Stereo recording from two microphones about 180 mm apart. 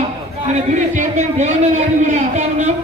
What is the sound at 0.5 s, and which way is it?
A man's voice, 40° right (ahead or behind).